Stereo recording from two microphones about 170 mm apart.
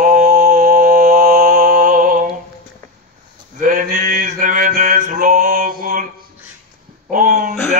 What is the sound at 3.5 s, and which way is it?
Male singing, 50° right (ahead or behind).